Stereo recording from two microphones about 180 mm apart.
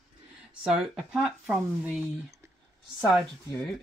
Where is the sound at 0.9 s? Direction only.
5° right (ahead or behind).